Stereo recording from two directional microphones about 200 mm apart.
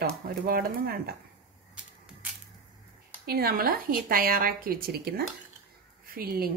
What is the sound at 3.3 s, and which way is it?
A woman's voice, 50° right (ahead or behind).